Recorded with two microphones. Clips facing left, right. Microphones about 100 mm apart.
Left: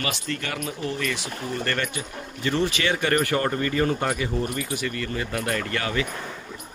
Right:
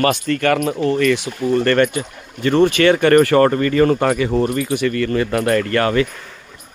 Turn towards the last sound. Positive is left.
turn(degrees=-55)  # may be behind; listen again after turning